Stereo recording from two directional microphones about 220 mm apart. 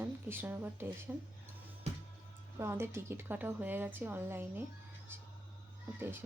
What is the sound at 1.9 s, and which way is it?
Music, 30° right (ahead or behind).